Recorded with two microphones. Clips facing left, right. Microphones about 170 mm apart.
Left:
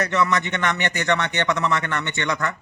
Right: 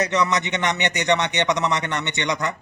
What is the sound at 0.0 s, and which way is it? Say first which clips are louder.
A man's voice: even; 20° right (ahead or behind).